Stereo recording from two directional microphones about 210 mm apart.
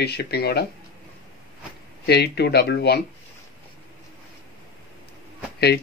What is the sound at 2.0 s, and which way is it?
Speech, 50° left (ahead or behind).